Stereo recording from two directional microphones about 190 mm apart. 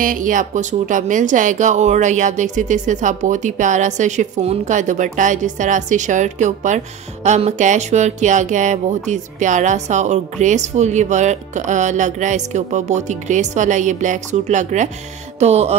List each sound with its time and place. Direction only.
0.0 s speech: 45° right (ahead or behind)
15.3 s music: 35° right (ahead or behind)